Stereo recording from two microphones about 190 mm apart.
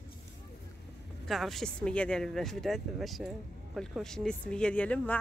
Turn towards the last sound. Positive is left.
turn(degrees=5)  # may be behind; listen again after turning